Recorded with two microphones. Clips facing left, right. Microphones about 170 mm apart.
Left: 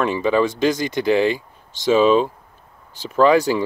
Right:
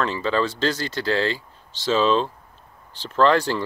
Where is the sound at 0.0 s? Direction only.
15° left (ahead or behind).